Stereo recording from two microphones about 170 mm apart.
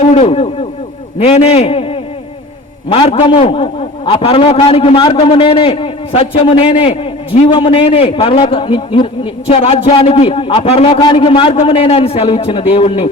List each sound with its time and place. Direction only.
0.0 s a man's voice: 40° left (ahead or behind)